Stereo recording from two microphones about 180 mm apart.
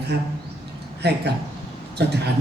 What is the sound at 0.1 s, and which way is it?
A man's voice, 65° right (ahead or behind).